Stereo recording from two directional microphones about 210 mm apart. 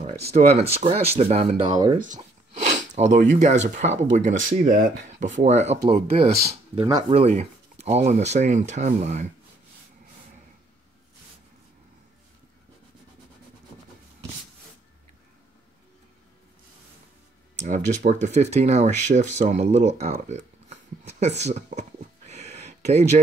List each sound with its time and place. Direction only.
0.3 s speech: 30° right (ahead or behind)
17.6 s speech: 35° right (ahead or behind)